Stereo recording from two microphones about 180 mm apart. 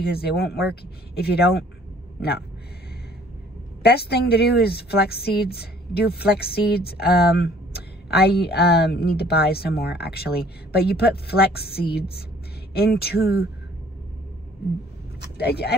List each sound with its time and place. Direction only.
0.0 s speech: 60° left (ahead or behind)
3.8 s speech: 65° left (ahead or behind)
15.1 s speech: 65° left (ahead or behind)